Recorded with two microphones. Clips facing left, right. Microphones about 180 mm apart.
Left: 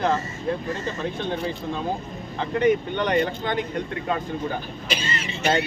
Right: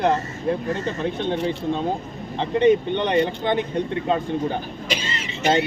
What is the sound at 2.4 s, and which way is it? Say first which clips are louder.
Speech: right 4 dB; 25° right (ahead or behind).